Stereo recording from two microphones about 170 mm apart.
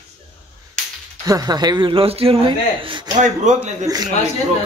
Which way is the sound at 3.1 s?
45° right (ahead or behind).